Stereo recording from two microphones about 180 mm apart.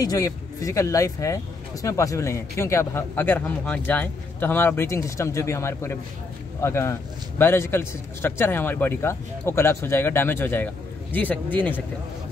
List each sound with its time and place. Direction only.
0.0 s speech: 20° left (ahead or behind)